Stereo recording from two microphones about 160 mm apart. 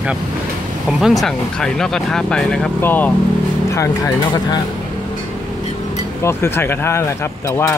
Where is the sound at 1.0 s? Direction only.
Centre (ahead or behind); by 4.6 s 25° left (ahead or behind).